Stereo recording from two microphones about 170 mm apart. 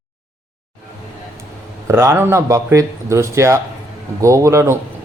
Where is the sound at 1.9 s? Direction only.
15° right (ahead or behind).